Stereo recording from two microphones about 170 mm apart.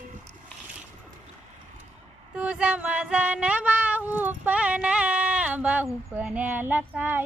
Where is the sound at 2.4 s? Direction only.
5° right (ahead or behind).